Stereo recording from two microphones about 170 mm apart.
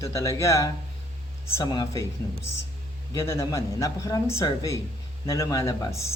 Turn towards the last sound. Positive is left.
turn(degrees=15)  # may be behind; listen again after turning